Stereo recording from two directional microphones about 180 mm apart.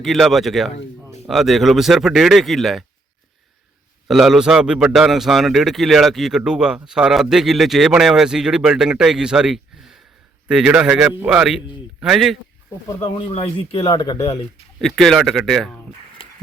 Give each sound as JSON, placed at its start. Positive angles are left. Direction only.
{"t": 0.0, "sound": "a man's voice", "side_deg": 0}
{"t": 4.1, "sound": "a man's voice", "side_deg": 0}
{"t": 12.9, "sound": "speech", "side_deg": 25}
{"t": 13.7, "sound": "speech", "side_deg": 20}
{"t": 14.8, "sound": "a man's voice", "side_deg": 0}